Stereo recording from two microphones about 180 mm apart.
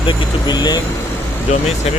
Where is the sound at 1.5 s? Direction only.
35° left (ahead or behind).